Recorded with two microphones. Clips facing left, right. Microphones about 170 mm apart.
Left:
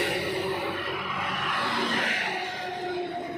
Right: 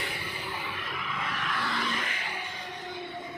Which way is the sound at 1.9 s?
75° left (ahead or behind).